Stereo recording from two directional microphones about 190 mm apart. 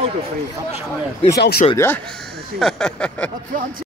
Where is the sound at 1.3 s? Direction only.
60° left (ahead or behind).